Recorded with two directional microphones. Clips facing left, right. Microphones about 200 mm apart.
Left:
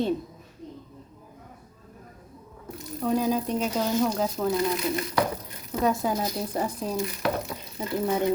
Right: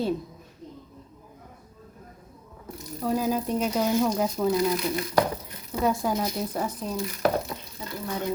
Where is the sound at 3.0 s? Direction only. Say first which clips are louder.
Left 1 dB; 5° right (ahead or behind); by 6.9 s 10° left (ahead or behind).